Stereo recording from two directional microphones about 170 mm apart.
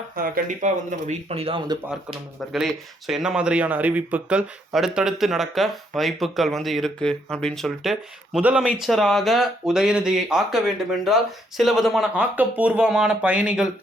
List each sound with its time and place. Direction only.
0.2 s speech: 55° right (ahead or behind); by 1.8 s 25° right (ahead or behind)
2.4 s speech: centre (ahead or behind)